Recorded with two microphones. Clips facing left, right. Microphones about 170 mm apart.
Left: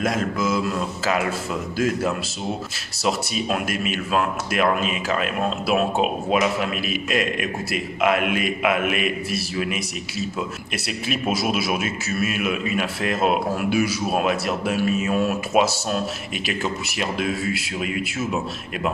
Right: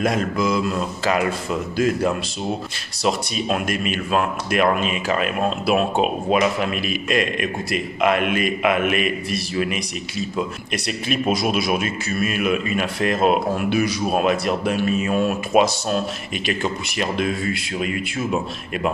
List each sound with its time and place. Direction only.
0.0 s speech: centre (ahead or behind)